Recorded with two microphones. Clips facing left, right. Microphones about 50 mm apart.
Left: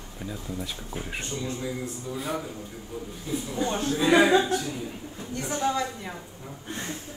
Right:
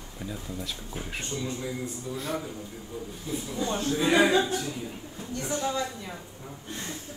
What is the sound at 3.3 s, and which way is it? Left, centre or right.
Speech, left.